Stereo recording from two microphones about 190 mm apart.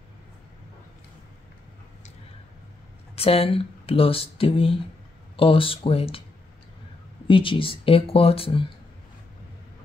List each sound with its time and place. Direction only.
3.2 s speech: 30° left (ahead or behind)
7.2 s speech: 25° left (ahead or behind)